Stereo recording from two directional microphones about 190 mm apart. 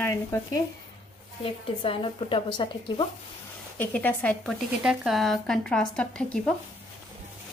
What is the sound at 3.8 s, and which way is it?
Speech, 10° left (ahead or behind).